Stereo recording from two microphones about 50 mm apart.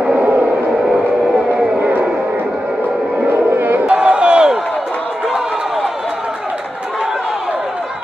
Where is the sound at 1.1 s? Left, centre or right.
Right.